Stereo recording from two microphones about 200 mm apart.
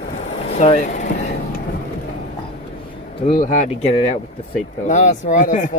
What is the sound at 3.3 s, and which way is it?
Speech, 40° left (ahead or behind).